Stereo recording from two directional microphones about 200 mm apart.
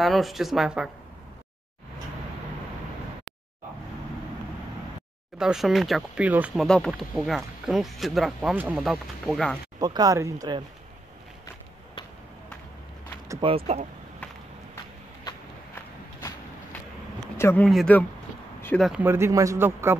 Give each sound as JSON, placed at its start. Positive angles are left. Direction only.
{"t": 0.0, "sound": "speech", "side_deg": 0}
{"t": 5.4, "sound": "speech", "side_deg": 0}
{"t": 9.8, "sound": "speech", "side_deg": -20}
{"t": 13.3, "sound": "speech", "side_deg": -25}
{"t": 17.2, "sound": "a sound", "side_deg": 10}
{"t": 17.6, "sound": "speech", "side_deg": 5}